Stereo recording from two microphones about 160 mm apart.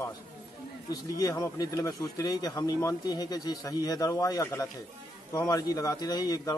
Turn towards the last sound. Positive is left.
turn(degrees=25)  # may be behind; listen again after turning